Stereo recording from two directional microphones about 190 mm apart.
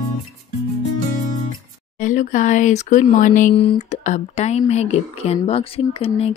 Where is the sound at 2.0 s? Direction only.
40° left (ahead or behind).